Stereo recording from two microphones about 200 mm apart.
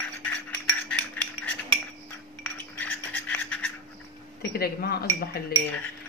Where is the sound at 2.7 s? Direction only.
10° left (ahead or behind).